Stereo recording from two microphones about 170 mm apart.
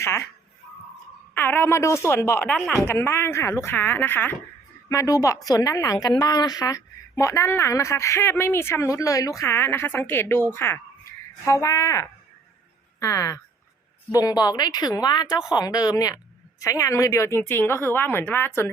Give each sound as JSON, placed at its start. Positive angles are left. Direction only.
{"t": 0.0, "sound": "a woman's voice", "side_deg": 15}
{"t": 1.4, "sound": "a woman's voice", "side_deg": 10}
{"t": 2.6, "sound": "speech", "side_deg": 5}
{"t": 2.8, "sound": "a woman's voice", "side_deg": 15}